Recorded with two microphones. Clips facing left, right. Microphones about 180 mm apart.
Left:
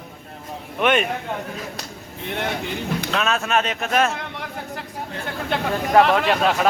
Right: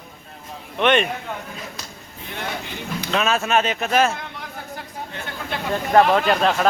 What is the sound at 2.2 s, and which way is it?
Speech, 60° left (ahead or behind).